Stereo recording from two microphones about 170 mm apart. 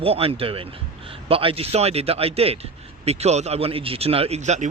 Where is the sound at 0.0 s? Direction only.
35° right (ahead or behind).